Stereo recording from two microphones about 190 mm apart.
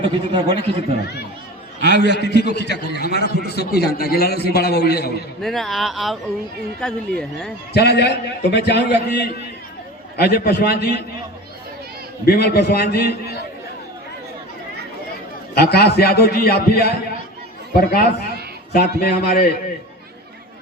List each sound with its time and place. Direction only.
0.3 s speech: 25° right (ahead or behind)
1.8 s a man's voice: 60° left (ahead or behind)
5.4 s speech: centre (ahead or behind)
7.7 s a man's voice: 60° left (ahead or behind)
12.2 s a man's voice: 55° left (ahead or behind)
15.5 s a man's voice: 55° left (ahead or behind)